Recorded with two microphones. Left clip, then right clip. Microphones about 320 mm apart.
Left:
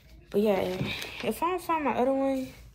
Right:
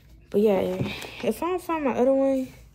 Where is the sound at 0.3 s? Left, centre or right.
Centre.